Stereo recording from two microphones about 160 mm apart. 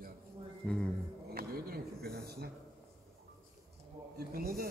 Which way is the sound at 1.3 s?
75° right (ahead or behind).